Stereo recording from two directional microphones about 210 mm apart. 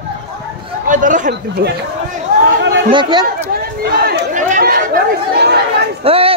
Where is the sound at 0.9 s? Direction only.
40° right (ahead or behind).